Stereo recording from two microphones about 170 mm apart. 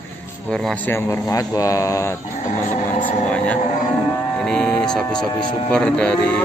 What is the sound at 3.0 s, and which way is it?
Speech, 10° left (ahead or behind).